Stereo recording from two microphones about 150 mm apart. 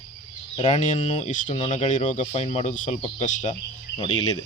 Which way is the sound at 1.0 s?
45° left (ahead or behind).